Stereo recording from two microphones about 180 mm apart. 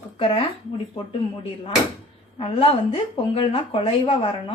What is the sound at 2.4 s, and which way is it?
A woman's voice, 30° left (ahead or behind).